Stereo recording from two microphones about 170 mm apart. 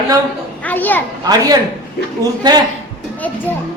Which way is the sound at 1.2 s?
20° right (ahead or behind).